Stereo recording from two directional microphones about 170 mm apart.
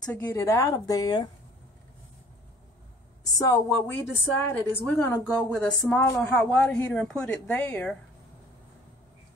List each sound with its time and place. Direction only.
0.0 s a woman's voice: 10° left (ahead or behind)
3.3 s speech: 15° left (ahead or behind)